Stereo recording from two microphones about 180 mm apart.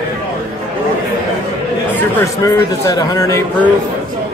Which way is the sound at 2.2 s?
15° left (ahead or behind).